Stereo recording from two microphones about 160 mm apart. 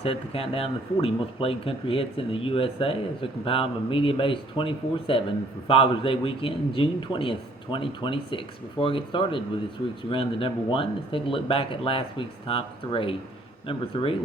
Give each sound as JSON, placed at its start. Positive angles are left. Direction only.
{"t": 0.0, "sound": "speech", "side_deg": 35}